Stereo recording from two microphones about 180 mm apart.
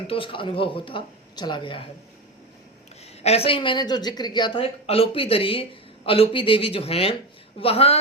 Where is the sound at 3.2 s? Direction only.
35° left (ahead or behind).